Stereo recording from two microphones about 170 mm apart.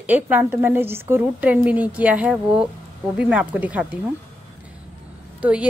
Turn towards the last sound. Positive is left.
turn(degrees=-10)  # may be behind; listen again after turning